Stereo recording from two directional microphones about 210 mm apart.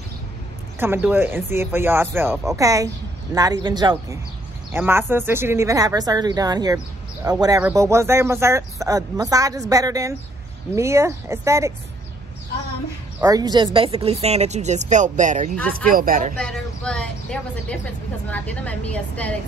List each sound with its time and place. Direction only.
0.7 s speech: 10° right (ahead or behind)
13.2 s speech: 20° right (ahead or behind); by 16.3 s 40° right (ahead or behind)
16.3 s a woman's voice: 5° left (ahead or behind)